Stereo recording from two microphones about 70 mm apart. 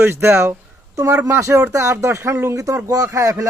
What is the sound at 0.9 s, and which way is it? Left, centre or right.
Speech, right.